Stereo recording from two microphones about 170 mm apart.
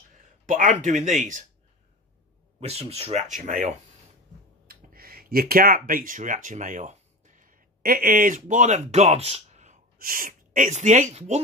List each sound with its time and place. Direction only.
0.5 s speech: 50° right (ahead or behind)
2.6 s speech: 40° right (ahead or behind)
4.6 s a sound: 60° right (ahead or behind)
8.4 s speech: 45° right (ahead or behind)
9.9 s speech: 55° right (ahead or behind); by 11.4 s 40° right (ahead or behind)